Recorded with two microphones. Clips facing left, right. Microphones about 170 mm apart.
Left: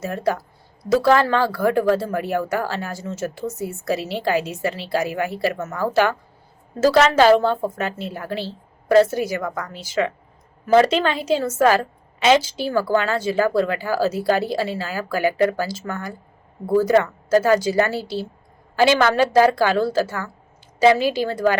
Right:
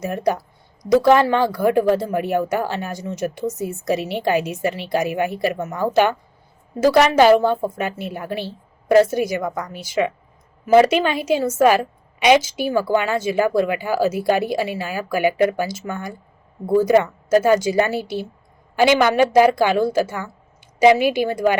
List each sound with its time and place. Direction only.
0.0 s a woman's voice: 20° right (ahead or behind)